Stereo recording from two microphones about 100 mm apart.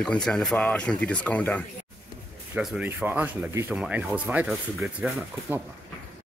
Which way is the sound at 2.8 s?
15° right (ahead or behind).